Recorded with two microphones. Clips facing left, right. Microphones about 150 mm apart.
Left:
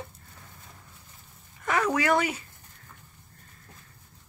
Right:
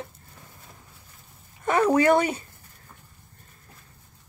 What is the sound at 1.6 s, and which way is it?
Speech, 30° right (ahead or behind).